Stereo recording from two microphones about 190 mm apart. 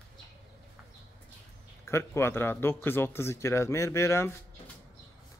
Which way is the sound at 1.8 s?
15° left (ahead or behind).